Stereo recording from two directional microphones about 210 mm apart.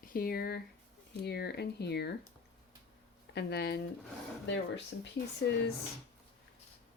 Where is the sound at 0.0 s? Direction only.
45° left (ahead or behind).